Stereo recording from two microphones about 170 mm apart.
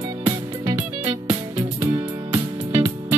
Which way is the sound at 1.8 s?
15° right (ahead or behind).